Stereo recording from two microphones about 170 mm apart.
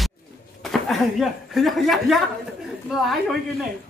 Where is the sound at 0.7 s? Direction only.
Centre (ahead or behind).